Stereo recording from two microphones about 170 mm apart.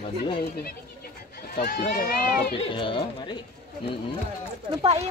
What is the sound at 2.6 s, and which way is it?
Speech, 30° left (ahead or behind).